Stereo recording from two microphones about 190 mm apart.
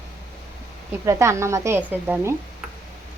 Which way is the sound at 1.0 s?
15° right (ahead or behind).